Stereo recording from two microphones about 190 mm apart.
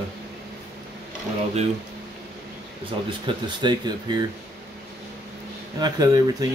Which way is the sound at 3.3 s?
25° right (ahead or behind).